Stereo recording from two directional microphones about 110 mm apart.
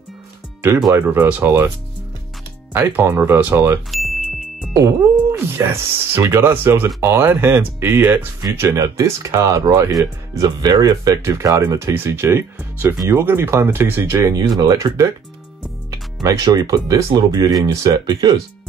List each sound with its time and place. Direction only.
0.9 s speech: 15° right (ahead or behind)
2.7 s speech: 20° right (ahead or behind)
3.9 s music: centre (ahead or behind)
4.7 s speech: 30° right (ahead or behind)
8.5 s speech: 30° right (ahead or behind)